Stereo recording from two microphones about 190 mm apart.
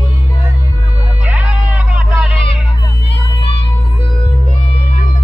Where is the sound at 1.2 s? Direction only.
5° right (ahead or behind).